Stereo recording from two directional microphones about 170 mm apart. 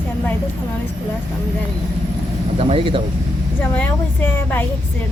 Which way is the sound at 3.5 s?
10° left (ahead or behind).